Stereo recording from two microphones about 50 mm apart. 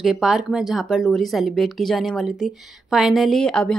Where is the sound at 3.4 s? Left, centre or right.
Centre.